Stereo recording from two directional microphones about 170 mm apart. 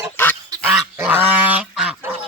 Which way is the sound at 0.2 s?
10° left (ahead or behind).